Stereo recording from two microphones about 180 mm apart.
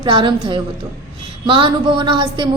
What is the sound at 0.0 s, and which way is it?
A woman's voice, 25° right (ahead or behind).